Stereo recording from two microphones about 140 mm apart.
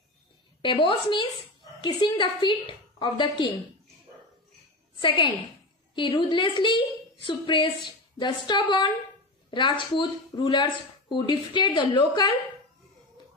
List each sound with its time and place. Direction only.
0.6 s speech: 35° left (ahead or behind)
5.0 s speech: 35° left (ahead or behind)